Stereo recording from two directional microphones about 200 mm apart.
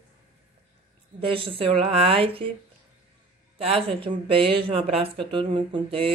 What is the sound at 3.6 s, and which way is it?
Speech, 30° right (ahead or behind).